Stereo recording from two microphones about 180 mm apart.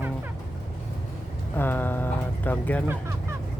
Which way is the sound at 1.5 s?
10° left (ahead or behind).